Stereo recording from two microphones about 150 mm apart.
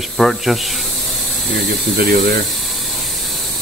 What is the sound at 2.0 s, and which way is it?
Speech, 90° right.